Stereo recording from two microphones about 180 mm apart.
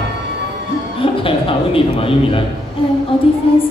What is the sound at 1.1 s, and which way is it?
Speech, 30° left (ahead or behind).